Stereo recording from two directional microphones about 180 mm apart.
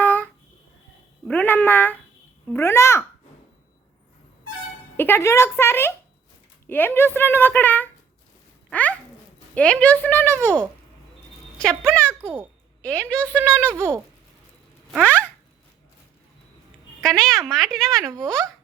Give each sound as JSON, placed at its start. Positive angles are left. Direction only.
{"t": 0.0, "sound": "a sound", "side_deg": 10}
{"t": 1.3, "sound": "a child's voice", "side_deg": 10}
{"t": 4.9, "sound": "a child's voice", "side_deg": 10}
{"t": 8.7, "sound": "a sound", "side_deg": 10}
{"t": 9.6, "sound": "a child's voice", "side_deg": 5}
{"t": 11.5, "sound": "a child's voice", "side_deg": 5}
{"t": 12.2, "sound": "speech", "side_deg": -15}
{"t": 12.8, "sound": "a child's voice", "side_deg": 5}
{"t": 13.7, "sound": "speech", "side_deg": -15}
{"t": 15.0, "sound": "a child's voice", "side_deg": 10}
{"t": 17.0, "sound": "a woman's voice", "side_deg": 0}